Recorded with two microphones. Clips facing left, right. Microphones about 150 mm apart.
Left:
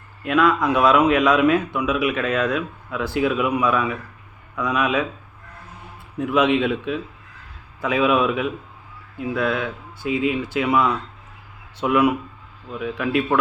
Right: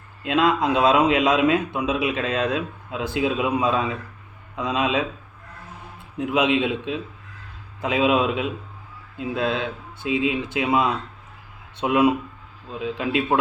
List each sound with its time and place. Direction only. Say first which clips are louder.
0.2 s a man's voice: left 1 dB; 25° right (ahead or behind)
6.1 s a man's voice: left 2 dB; 15° right (ahead or behind)